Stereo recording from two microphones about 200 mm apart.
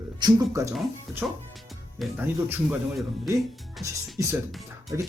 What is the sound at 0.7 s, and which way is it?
Speech, centre (ahead or behind).